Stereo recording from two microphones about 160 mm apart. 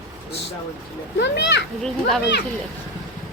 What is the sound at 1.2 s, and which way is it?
Speech, 90° left.